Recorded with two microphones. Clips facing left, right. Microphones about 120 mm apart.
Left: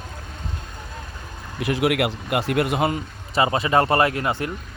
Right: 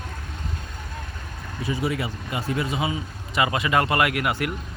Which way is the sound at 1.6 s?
90° left.